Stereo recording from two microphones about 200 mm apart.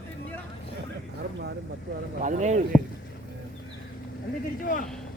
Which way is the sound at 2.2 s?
35° right (ahead or behind).